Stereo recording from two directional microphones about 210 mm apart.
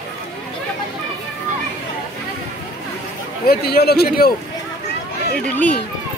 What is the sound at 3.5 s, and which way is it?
Speech, 50° left (ahead or behind).